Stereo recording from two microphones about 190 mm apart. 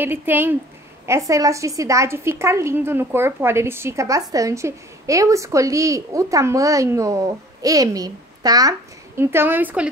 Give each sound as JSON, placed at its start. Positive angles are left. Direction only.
{"t": 0.0, "sound": "a woman's voice", "side_deg": -10}